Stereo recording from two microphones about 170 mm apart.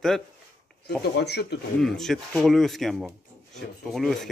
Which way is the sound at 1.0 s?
75° left (ahead or behind).